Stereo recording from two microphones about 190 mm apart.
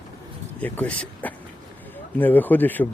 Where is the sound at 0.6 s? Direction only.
10° left (ahead or behind).